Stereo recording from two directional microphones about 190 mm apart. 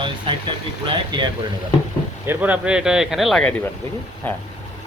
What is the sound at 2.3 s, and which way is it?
Speech, 10° right (ahead or behind).